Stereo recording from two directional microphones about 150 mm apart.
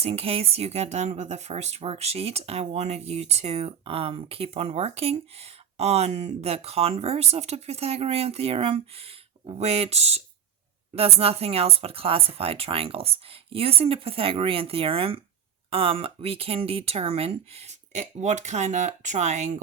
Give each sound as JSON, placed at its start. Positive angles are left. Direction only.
{"t": 0.0, "sound": "speech", "side_deg": -40}